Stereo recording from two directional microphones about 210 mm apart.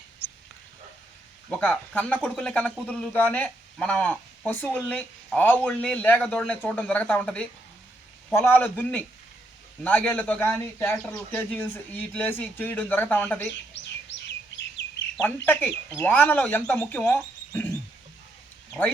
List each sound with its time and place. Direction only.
0.2 s dog: 10° left (ahead or behind)
1.5 s speech: 5° left (ahead or behind)
13.5 s chirp: 60° left (ahead or behind)
15.4 s speech: 10° left (ahead or behind)